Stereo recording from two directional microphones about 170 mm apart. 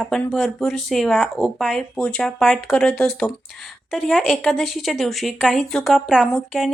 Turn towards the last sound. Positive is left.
turn(degrees=0)  # may be behind; listen again after turning